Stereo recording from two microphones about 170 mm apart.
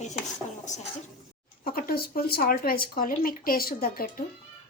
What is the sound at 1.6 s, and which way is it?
Speech, 55° left (ahead or behind).